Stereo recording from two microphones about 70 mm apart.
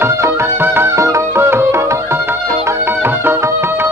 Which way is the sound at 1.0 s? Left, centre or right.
Right.